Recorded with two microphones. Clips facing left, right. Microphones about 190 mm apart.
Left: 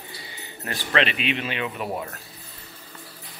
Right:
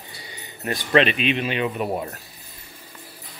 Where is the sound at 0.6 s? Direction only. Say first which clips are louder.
Right 5 dB; 20° right (ahead or behind).